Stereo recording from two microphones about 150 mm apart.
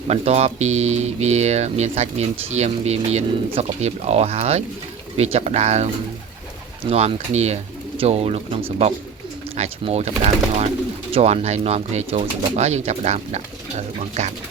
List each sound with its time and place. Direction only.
0.1 s speech: 45° right (ahead or behind)
6.9 s speech: 45° right (ahead or behind)